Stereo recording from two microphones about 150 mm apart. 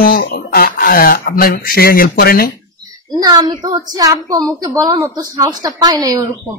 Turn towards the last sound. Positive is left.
turn(degrees=-25)  # may be behind; listen again after turning